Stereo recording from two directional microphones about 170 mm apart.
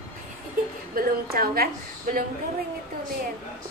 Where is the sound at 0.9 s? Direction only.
60° right (ahead or behind).